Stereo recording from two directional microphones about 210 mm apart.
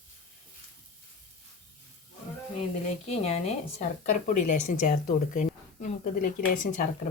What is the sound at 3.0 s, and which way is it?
A woman's voice, 30° left (ahead or behind).